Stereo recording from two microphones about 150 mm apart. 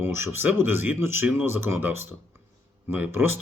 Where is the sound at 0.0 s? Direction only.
15° right (ahead or behind).